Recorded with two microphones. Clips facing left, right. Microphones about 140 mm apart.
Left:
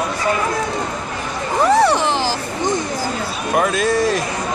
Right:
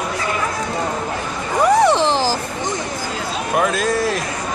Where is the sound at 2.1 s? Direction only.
35° right (ahead or behind).